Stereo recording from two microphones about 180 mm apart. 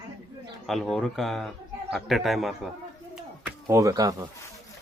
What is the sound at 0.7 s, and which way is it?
Speech, centre (ahead or behind).